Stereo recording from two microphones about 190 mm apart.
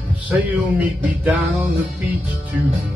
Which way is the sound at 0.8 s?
5° right (ahead or behind).